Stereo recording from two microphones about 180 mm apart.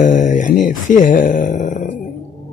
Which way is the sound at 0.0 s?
45° left (ahead or behind).